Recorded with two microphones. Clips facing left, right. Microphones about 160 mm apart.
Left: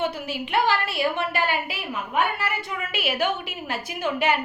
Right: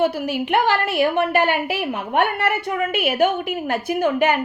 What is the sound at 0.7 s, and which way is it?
A woman's voice, 55° right (ahead or behind).